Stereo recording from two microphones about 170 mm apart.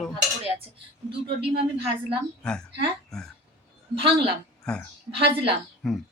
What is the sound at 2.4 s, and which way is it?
Speech, 5° left (ahead or behind).